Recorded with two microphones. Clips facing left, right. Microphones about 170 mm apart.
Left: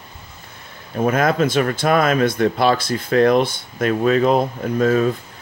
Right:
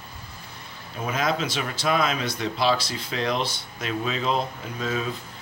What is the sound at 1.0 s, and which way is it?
Speech, 55° left (ahead or behind).